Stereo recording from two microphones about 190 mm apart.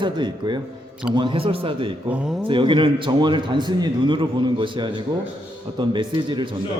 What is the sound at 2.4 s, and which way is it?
A man's voice, 25° right (ahead or behind).